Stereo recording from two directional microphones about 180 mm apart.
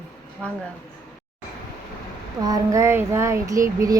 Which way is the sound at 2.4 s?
20° right (ahead or behind).